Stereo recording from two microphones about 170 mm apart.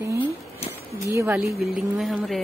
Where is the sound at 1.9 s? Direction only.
Centre (ahead or behind).